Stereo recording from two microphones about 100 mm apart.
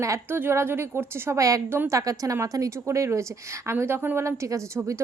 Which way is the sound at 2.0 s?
35° right (ahead or behind).